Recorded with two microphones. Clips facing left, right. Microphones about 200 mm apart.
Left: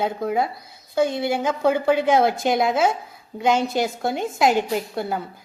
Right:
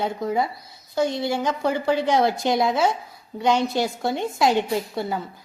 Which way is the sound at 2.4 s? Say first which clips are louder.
Left 1 dB; centre (ahead or behind).